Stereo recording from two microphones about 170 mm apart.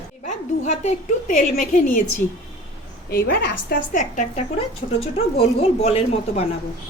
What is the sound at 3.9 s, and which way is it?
Speech, 45° left (ahead or behind).